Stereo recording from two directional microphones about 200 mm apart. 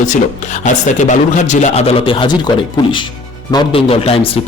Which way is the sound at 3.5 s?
30° left (ahead or behind).